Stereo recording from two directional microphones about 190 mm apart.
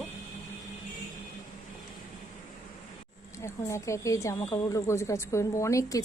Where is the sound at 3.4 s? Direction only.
15° left (ahead or behind).